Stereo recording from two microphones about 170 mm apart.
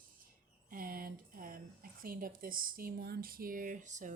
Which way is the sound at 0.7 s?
60° right (ahead or behind).